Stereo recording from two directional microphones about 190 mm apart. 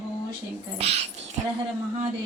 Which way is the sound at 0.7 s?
35° right (ahead or behind).